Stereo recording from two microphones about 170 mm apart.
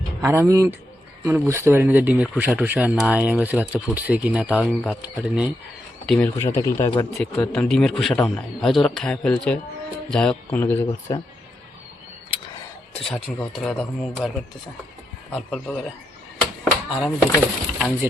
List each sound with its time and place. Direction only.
0.2 s speech: 15° right (ahead or behind)
6.1 s speech: 10° left (ahead or behind)
12.9 s speech: 5° left (ahead or behind)
17.0 s speech: 5° right (ahead or behind)